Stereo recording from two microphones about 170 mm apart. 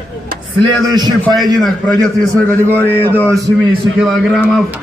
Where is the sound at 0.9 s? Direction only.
25° right (ahead or behind).